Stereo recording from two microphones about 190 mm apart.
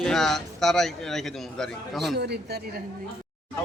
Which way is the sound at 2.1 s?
60° right (ahead or behind).